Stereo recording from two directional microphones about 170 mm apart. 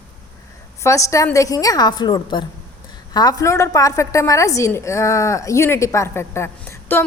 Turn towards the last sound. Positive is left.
turn(degrees=15)  # may be behind; listen again after turning